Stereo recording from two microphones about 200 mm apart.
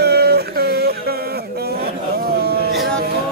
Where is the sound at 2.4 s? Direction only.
50° right (ahead or behind).